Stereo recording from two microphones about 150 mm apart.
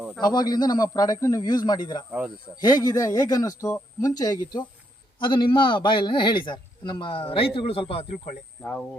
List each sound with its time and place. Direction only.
0.2 s a man's voice: 25° left (ahead or behind); by 8.3 s 40° left (ahead or behind)
8.6 s speech: 5° left (ahead or behind)